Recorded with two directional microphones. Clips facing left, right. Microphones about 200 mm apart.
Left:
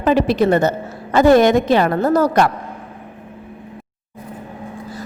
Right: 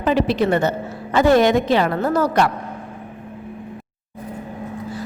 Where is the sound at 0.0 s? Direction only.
45° left (ahead or behind).